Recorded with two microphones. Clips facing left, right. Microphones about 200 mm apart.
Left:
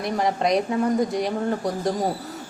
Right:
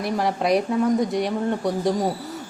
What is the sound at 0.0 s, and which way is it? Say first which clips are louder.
A woman's voice: even; centre (ahead or behind).